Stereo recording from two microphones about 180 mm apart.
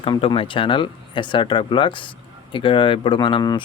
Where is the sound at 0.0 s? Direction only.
25° left (ahead or behind).